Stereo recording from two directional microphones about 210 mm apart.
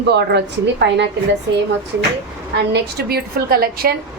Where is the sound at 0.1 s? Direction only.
50° right (ahead or behind).